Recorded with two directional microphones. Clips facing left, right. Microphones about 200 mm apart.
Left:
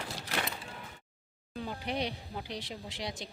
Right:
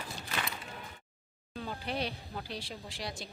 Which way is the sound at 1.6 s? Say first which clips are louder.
Left 1 dB; 15° left (ahead or behind).